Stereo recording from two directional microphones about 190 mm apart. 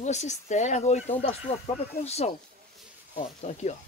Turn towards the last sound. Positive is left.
turn(degrees=35)  # may be behind; listen again after turning